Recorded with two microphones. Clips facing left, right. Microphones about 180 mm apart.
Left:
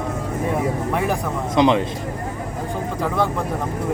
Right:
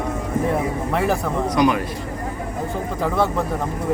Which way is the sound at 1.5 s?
25° left (ahead or behind).